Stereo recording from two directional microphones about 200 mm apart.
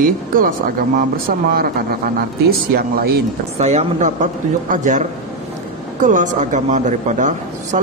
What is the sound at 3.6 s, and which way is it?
Speech, 35° right (ahead or behind).